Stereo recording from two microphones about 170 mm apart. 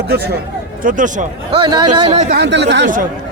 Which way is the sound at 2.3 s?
85° right.